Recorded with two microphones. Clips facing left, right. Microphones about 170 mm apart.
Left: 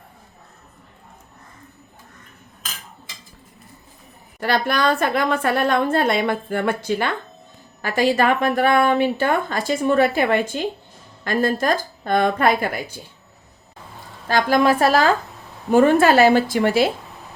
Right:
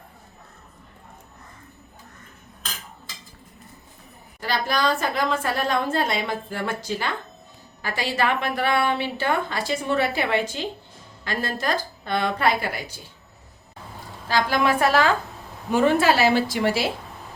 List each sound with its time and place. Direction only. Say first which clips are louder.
4.4 s a woman's voice: left 4 dB; 60° left (ahead or behind)
7.8 s a woman's voice: left 7 dB; 45° left (ahead or behind)
14.3 s a woman's voice: left 5 dB; 45° left (ahead or behind)